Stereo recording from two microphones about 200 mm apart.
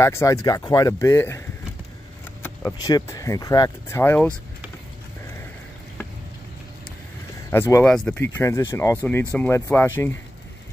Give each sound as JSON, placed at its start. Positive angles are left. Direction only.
{"t": 0.0, "sound": "speech", "side_deg": 15}
{"t": 2.4, "sound": "speech", "side_deg": 15}
{"t": 7.5, "sound": "speech", "side_deg": 10}